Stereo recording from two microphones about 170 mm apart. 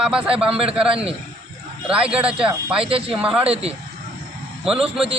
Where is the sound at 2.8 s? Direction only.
35° right (ahead or behind).